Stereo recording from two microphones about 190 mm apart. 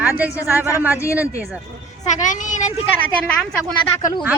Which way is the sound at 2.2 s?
40° left (ahead or behind).